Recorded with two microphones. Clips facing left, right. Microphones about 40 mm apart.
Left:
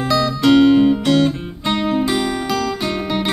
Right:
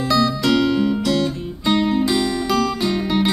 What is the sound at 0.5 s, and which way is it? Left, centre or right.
Music, left.